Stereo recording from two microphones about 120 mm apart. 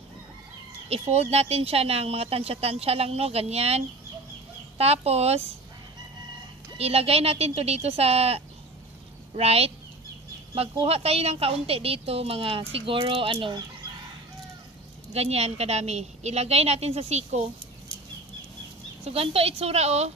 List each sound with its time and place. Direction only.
0.8 s speech: 60° right (ahead or behind)
6.8 s a woman's voice: 55° right (ahead or behind)
15.1 s speech: 60° right (ahead or behind)
19.0 s speech: 55° right (ahead or behind)